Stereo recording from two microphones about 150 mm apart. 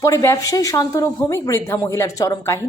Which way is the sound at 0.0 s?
20° left (ahead or behind).